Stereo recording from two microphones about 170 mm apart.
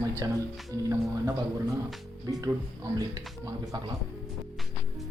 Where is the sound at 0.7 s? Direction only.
20° right (ahead or behind).